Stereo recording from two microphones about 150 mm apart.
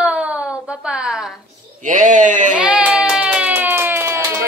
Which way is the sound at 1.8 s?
60° right (ahead or behind).